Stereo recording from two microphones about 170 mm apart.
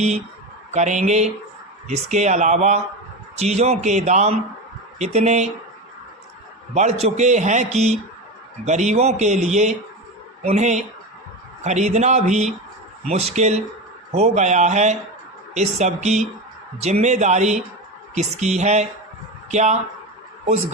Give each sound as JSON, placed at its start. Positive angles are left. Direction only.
{"t": 0.7, "sound": "speech", "side_deg": -45}
{"t": 6.7, "sound": "a man's voice", "side_deg": -40}